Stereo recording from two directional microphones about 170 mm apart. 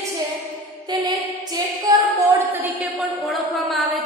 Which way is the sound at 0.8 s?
25° right (ahead or behind).